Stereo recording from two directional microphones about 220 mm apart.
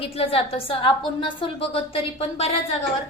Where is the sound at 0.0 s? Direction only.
25° left (ahead or behind).